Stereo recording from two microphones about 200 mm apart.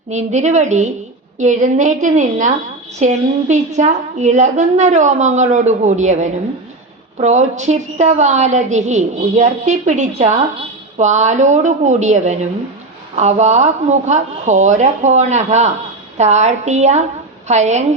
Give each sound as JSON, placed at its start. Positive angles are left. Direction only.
{"t": 0.1, "sound": "a woman's voice", "side_deg": -35}